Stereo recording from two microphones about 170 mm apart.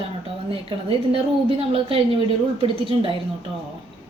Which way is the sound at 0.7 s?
35° right (ahead or behind).